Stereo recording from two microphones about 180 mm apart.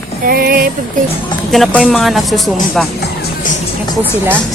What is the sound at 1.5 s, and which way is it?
Speech, centre (ahead or behind).